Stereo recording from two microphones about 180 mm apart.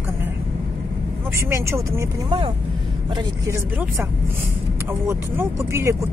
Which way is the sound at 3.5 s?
15° right (ahead or behind).